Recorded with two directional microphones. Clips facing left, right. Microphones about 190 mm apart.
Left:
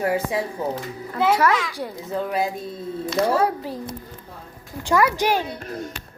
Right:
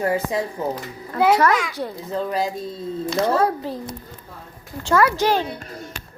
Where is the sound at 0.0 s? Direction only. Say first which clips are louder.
Right 1 dB; 10° left (ahead or behind).